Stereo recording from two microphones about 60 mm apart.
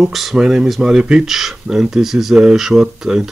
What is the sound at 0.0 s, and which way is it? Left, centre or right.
Speech, centre.